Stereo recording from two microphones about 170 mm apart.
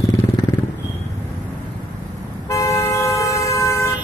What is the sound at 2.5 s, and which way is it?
Vehicle, 20° left (ahead or behind).